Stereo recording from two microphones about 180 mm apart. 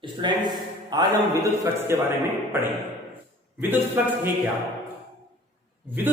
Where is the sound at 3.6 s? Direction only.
10° right (ahead or behind).